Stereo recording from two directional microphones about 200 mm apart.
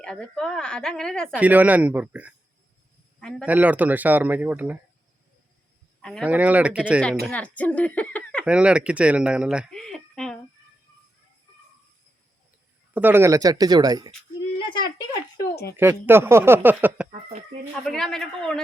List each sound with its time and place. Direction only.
0.0 s a woman's voice: 5° left (ahead or behind)
1.4 s speech: 5° right (ahead or behind)
3.2 s a man's voice: 5° left (ahead or behind)
3.4 s speech: 5° right (ahead or behind)
6.0 s speech: centre (ahead or behind)
7.3 s speech: 5° left (ahead or behind)
8.4 s speech: 5° right (ahead or behind)
12.9 s speech: 10° right (ahead or behind)
14.6 s a sound: 25° left (ahead or behind)
15.7 s speech: 10° right (ahead or behind)
17.8 s a woman's voice: centre (ahead or behind)